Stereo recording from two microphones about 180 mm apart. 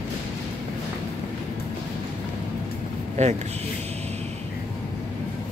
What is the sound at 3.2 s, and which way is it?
Speech, 40° right (ahead or behind).